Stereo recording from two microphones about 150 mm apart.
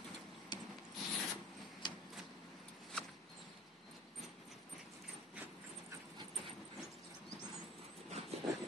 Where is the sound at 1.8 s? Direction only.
30° left (ahead or behind).